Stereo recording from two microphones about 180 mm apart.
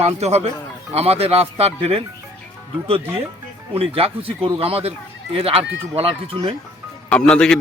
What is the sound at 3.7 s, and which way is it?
Speech, 30° right (ahead or behind).